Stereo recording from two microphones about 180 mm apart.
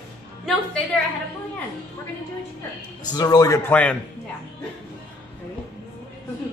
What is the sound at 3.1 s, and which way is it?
Speech, 20° left (ahead or behind).